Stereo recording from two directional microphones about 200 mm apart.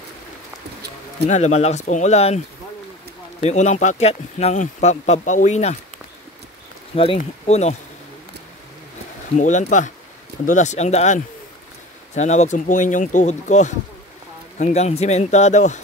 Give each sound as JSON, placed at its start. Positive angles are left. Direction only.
{"t": 1.3, "sound": "speech", "side_deg": 35}
{"t": 7.2, "sound": "speech", "side_deg": 35}
{"t": 9.4, "sound": "speech", "side_deg": 40}